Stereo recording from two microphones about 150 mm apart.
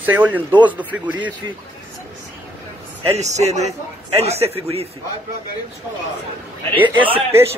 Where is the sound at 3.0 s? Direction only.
45° right (ahead or behind).